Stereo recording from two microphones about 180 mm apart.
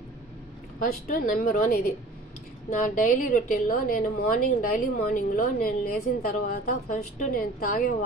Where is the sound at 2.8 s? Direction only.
50° left (ahead or behind).